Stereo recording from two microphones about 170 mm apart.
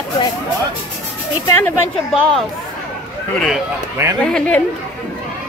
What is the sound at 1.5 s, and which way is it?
Speech, 15° left (ahead or behind).